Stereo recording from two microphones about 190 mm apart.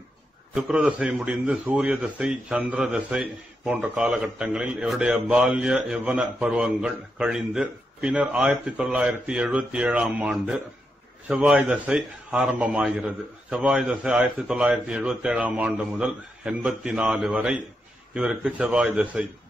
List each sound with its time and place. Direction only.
0.6 s a man's voice: 5° right (ahead or behind)